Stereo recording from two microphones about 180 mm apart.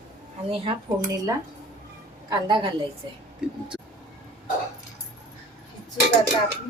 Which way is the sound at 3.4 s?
5° right (ahead or behind).